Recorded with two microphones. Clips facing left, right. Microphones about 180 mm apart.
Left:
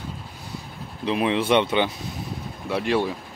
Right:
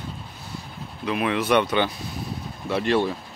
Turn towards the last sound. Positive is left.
turn(degrees=10)  # may be behind; listen again after turning